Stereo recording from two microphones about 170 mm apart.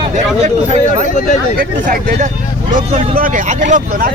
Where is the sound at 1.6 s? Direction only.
50° right (ahead or behind).